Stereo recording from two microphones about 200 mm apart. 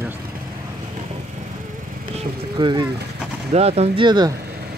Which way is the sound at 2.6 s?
25° right (ahead or behind).